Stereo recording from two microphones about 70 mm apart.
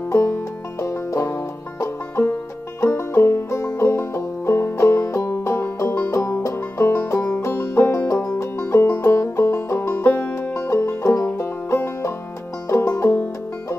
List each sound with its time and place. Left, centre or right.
0.1 s banjo: left
2.8 s music: left
8.2 s banjo: left
12.6 s music: left